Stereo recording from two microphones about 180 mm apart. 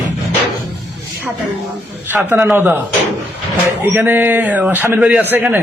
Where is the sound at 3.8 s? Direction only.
10° right (ahead or behind).